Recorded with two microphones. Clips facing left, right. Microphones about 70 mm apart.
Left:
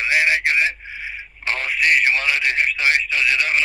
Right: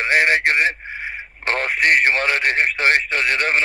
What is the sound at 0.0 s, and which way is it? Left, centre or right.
Speech, right.